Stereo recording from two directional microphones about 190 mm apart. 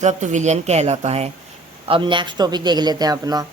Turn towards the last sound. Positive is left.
turn(degrees=-20)  # may be behind; listen again after turning